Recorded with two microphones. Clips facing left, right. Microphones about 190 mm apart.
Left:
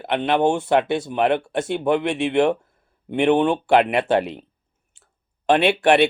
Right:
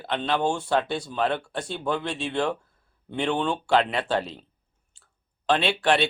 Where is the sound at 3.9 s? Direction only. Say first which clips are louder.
Left 7 dB; 60° left (ahead or behind).